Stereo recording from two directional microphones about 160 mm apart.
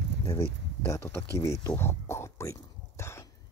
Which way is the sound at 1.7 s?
15° left (ahead or behind).